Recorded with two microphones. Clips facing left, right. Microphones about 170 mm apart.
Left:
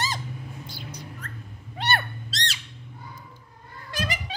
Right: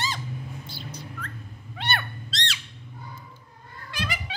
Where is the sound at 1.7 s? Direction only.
40° left (ahead or behind).